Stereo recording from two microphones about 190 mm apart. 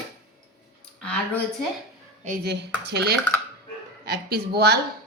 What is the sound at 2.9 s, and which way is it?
Speech, 60° right (ahead or behind).